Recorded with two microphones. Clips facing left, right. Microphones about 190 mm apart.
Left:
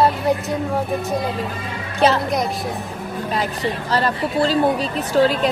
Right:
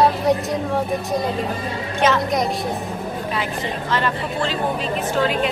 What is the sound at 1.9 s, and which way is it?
Speech, 35° left (ahead or behind).